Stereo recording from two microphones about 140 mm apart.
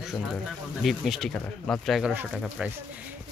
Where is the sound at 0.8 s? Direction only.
Centre (ahead or behind).